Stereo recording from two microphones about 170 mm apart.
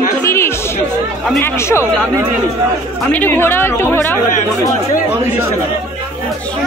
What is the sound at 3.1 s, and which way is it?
Speech, 10° left (ahead or behind).